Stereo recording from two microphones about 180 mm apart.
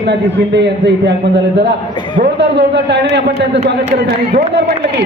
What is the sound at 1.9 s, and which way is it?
Speech, 25° left (ahead or behind).